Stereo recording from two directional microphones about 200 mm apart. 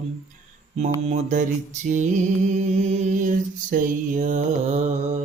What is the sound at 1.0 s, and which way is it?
Mantra, 35° right (ahead or behind).